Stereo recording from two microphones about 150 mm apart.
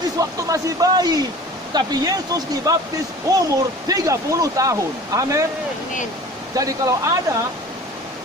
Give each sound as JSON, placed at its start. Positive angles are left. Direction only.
{"t": 0.2, "sound": "speech", "side_deg": -20}
{"t": 6.6, "sound": "speech", "side_deg": -25}